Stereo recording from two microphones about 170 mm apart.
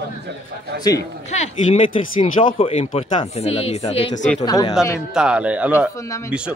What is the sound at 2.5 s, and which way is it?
Speech, 35° left (ahead or behind).